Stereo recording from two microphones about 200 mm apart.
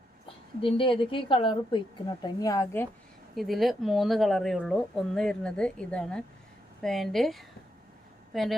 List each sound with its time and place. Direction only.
0.6 s a woman's voice: 25° left (ahead or behind)
3.3 s speech: centre (ahead or behind)